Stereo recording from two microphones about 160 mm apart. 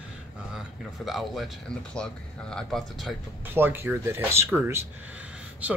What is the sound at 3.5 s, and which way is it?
Speech, 15° right (ahead or behind).